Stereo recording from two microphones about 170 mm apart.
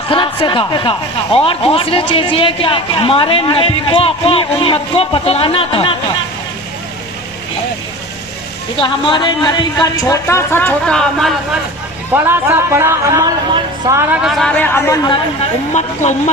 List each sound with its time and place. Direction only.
0.1 s speech: 30° left (ahead or behind)
8.8 s speech: 25° left (ahead or behind); by 11.3 s centre (ahead or behind)
12.1 s speech: 10° right (ahead or behind)
14.1 s speech: 5° right (ahead or behind); by 15.1 s 15° left (ahead or behind)
15.7 s speech: 45° left (ahead or behind)